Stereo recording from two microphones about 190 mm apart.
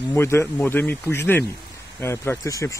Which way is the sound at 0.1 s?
15° left (ahead or behind).